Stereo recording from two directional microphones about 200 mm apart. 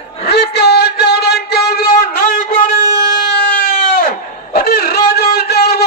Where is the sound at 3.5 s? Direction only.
40° left (ahead or behind).